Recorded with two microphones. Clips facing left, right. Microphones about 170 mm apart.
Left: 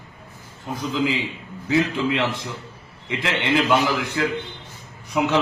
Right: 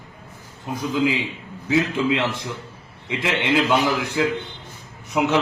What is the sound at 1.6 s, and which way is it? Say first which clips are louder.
A man's voice: even; 15° right (ahead or behind).